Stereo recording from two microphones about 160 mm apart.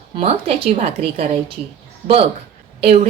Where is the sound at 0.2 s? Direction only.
40° right (ahead or behind).